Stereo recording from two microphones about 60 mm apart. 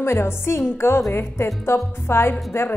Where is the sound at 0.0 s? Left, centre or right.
Left.